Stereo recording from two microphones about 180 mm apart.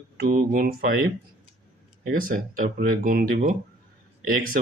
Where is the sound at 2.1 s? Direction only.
50° right (ahead or behind).